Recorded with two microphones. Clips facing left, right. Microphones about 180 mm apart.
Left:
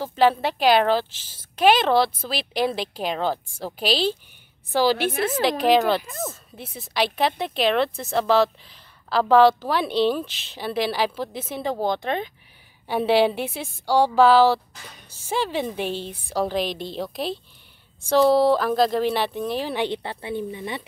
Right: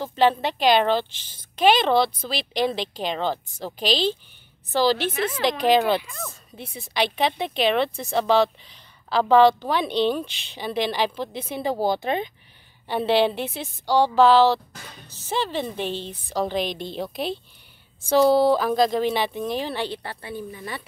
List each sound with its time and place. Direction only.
0.0 s a woman's voice: 5° left (ahead or behind)
5.1 s speech: 45° left (ahead or behind)
5.4 s speech: 5° left (ahead or behind)
12.8 s a woman's voice: 10° left (ahead or behind)
19.7 s a woman's voice: 20° left (ahead or behind)